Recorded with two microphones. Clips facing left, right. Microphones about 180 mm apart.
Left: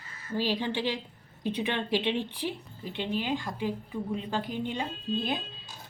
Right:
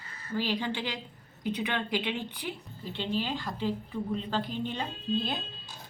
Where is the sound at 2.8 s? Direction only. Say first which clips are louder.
Left 1 dB; 15° left (ahead or behind).